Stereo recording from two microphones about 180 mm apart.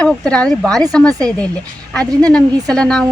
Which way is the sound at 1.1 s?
20° right (ahead or behind).